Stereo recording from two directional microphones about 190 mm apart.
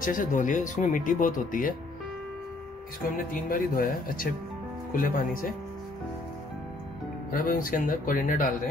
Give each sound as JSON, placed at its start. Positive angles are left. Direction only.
{"t": 0.0, "sound": "speech", "side_deg": 45}
{"t": 3.4, "sound": "speech", "side_deg": 45}
{"t": 7.2, "sound": "speech", "side_deg": 45}